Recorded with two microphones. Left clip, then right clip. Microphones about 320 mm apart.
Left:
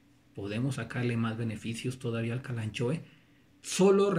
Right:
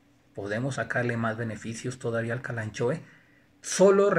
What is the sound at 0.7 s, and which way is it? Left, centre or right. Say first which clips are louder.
Speech: right 10 dB; centre.